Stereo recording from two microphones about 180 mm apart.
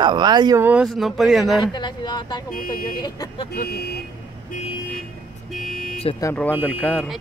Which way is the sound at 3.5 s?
60° left (ahead or behind).